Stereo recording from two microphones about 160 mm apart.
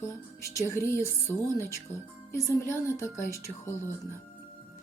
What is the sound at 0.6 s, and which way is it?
Speech, 20° left (ahead or behind).